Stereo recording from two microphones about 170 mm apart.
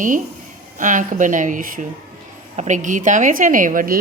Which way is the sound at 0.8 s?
50° right (ahead or behind).